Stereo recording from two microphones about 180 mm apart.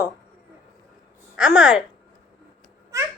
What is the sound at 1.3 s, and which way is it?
Speech, 5° right (ahead or behind).